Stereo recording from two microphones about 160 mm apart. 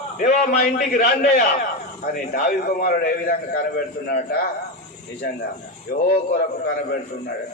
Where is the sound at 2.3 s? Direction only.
70° left (ahead or behind).